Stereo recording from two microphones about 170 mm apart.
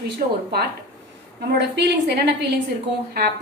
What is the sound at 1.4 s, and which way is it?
A woman's voice, 80° right.